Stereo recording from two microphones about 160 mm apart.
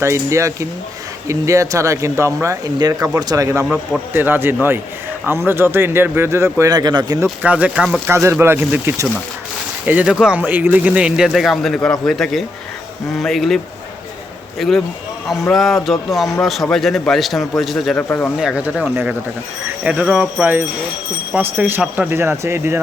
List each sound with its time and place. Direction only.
0.0 s speech: 15° right (ahead or behind)
7.3 s speech: 10° right (ahead or behind)
8.0 s speech: 15° right (ahead or behind); by 13.6 s centre (ahead or behind)
14.6 s speech: centre (ahead or behind)
18.3 s speech: 5° right (ahead or behind)